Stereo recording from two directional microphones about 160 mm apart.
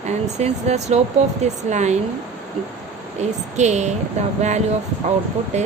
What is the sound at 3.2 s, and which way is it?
Speech, 45° right (ahead or behind).